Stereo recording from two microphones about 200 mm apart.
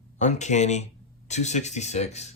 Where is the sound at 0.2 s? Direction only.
35° left (ahead or behind).